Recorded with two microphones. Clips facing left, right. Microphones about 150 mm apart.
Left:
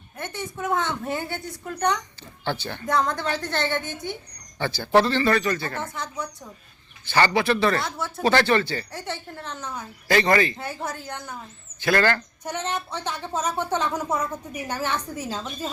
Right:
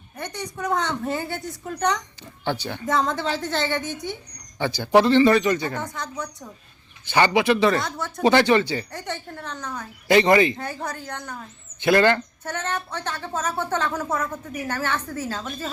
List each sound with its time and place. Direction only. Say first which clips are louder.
0.2 s a woman's voice: right 1 dB; 5° left (ahead or behind)
2.4 s speech: right 2 dB; 15° right (ahead or behind)
2.8 s a woman's voice: right 1 dB; centre (ahead or behind)
4.5 s speech: right 2 dB; 15° right (ahead or behind)
5.9 s a woman's voice: even; 5° left (ahead or behind)
7.0 s speech: right 2 dB; 15° right (ahead or behind)
7.8 s a woman's voice: right 1 dB; 5° left (ahead or behind)
8.2 s speech: right 3 dB; 15° right (ahead or behind)
8.9 s a woman's voice: right 1 dB; 5° left (ahead or behind)
10.1 s speech: right 4 dB; 20° right (ahead or behind)
10.6 s a woman's voice: right 1 dB; 5° left (ahead or behind)
11.8 s speech: right 4 dB; 20° right (ahead or behind)
12.5 s speech: even; 10° left (ahead or behind)